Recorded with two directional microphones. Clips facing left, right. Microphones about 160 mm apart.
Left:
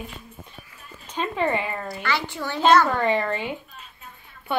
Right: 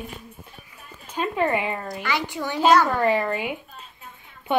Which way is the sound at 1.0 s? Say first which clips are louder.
Right 1 dB; 5° right (ahead or behind).